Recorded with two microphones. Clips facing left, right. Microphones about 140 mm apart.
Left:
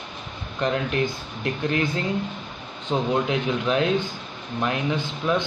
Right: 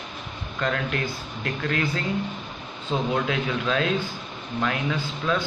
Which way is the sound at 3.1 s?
20° left (ahead or behind).